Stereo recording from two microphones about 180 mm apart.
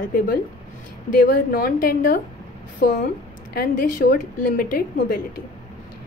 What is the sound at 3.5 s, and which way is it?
A woman's voice, 55° left (ahead or behind).